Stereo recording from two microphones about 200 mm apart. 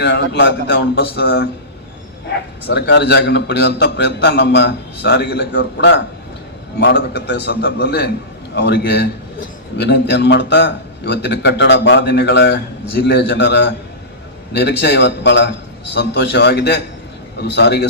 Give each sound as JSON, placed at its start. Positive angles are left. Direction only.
{"t": 0.0, "sound": "a man's voice", "side_deg": 55}
{"t": 2.6, "sound": "a man's voice", "side_deg": 60}